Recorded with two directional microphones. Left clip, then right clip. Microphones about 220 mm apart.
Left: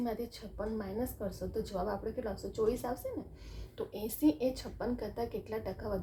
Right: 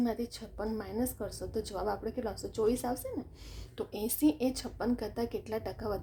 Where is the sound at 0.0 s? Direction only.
45° right (ahead or behind).